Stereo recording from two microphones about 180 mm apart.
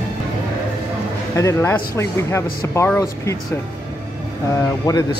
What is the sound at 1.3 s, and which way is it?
Speech, 15° left (ahead or behind).